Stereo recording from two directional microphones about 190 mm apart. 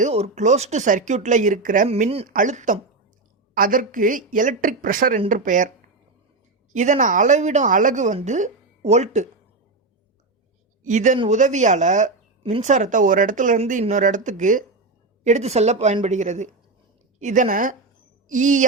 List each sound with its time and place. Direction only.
0.0 s speech: 35° right (ahead or behind)
1.9 s speech: 30° right (ahead or behind)
2.2 s a woman's voice: 45° right (ahead or behind)
6.7 s speech: 40° right (ahead or behind)
10.8 s a woman's voice: 40° right (ahead or behind)